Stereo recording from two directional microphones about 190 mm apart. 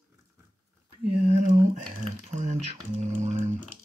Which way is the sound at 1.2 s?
35° right (ahead or behind).